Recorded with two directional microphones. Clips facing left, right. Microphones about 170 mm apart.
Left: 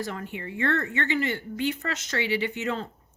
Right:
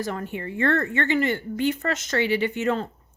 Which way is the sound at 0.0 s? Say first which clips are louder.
Right 4 dB; 45° right (ahead or behind).